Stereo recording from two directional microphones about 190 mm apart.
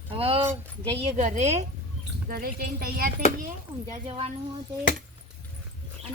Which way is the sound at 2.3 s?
50° right (ahead or behind).